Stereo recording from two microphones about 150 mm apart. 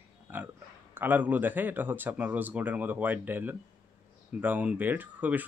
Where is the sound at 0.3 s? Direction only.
10° right (ahead or behind).